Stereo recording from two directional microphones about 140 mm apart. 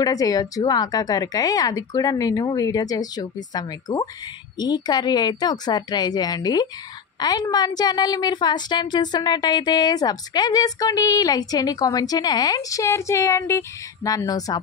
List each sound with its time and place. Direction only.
0.0 s a woman's voice: 25° left (ahead or behind)